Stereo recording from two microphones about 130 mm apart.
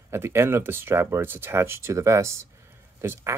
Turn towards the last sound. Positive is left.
turn(degrees=-20)  # may be behind; listen again after turning